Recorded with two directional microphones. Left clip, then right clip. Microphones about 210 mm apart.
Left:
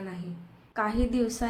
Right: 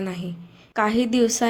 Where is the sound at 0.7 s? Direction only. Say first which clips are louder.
Right 8 dB; 35° right (ahead or behind).